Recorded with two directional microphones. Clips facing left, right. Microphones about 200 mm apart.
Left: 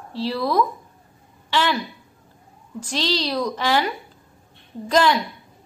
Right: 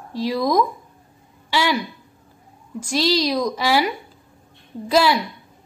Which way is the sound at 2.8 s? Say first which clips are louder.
Right 5 dB; 10° right (ahead or behind).